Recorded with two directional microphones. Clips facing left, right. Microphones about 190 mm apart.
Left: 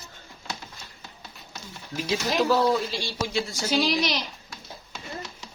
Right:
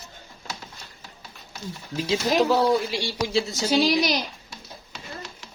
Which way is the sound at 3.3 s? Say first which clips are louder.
Right 6 dB; 25° right (ahead or behind).